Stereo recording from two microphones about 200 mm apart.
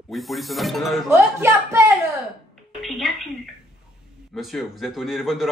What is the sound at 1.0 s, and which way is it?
Speech, 15° right (ahead or behind).